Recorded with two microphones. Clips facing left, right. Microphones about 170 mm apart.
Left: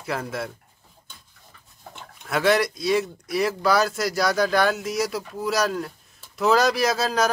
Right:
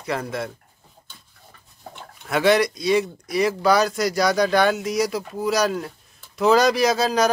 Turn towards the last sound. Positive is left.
turn(degrees=0)  # may be behind; listen again after turning